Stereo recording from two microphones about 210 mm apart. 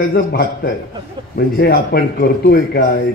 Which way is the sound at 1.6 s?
45° left (ahead or behind).